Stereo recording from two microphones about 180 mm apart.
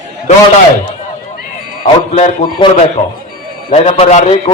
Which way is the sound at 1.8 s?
35° left (ahead or behind).